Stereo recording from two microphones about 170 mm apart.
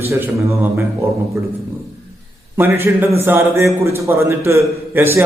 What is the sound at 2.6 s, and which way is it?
A man's voice, 15° right (ahead or behind).